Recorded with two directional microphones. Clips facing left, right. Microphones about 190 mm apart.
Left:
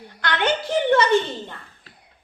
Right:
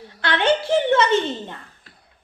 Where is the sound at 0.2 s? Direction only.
30° right (ahead or behind).